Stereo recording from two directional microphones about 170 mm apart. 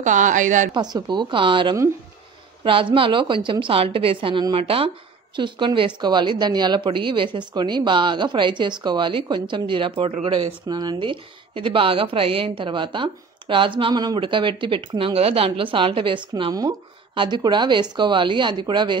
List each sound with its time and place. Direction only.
0.0 s a woman's voice: 50° right (ahead or behind)
0.7 s speech: 25° right (ahead or behind)